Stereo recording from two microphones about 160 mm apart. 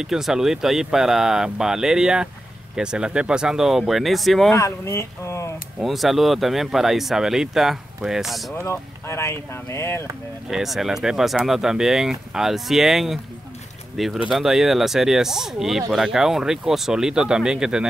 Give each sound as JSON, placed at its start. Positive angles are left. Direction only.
{"t": 0.0, "sound": "speech", "side_deg": -5}
{"t": 4.6, "sound": "speech", "side_deg": 15}
{"t": 5.8, "sound": "speech", "side_deg": 0}
{"t": 8.5, "sound": "speech", "side_deg": 15}
{"t": 10.5, "sound": "speech", "side_deg": 0}